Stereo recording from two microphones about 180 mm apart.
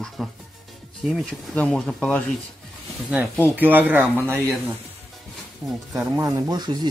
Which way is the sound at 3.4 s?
10° right (ahead or behind).